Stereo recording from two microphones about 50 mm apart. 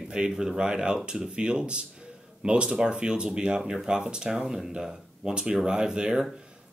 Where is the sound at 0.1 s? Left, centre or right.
Centre.